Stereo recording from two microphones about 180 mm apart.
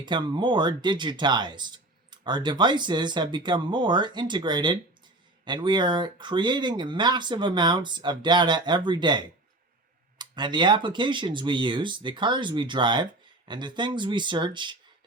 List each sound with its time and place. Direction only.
0.0 s speech: 25° right (ahead or behind)